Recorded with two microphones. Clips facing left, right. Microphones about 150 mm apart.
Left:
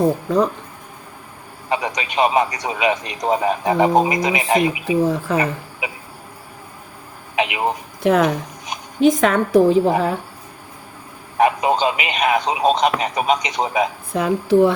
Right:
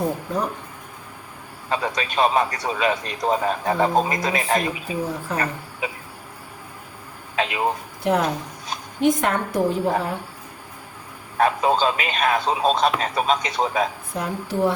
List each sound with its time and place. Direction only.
1.7 s a man's voice: 15° left (ahead or behind)
4.9 s a woman's voice: 90° left
5.8 s a man's voice: 15° left (ahead or behind)
7.3 s speech: 15° left (ahead or behind)
8.0 s a woman's voice: 90° left
11.3 s a man's voice: 15° left (ahead or behind)
14.2 s a woman's voice: 90° left